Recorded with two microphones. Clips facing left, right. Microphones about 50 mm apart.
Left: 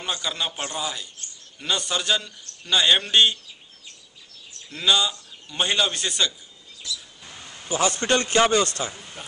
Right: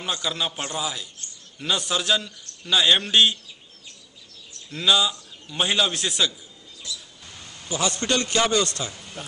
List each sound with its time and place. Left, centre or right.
0.0 s a man's voice: centre
4.6 s a man's voice: centre
7.2 s a man's voice: centre
8.9 s a sound: centre